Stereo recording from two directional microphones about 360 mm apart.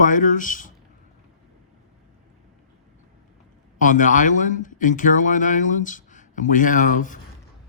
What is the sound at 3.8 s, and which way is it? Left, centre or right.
Speech, left.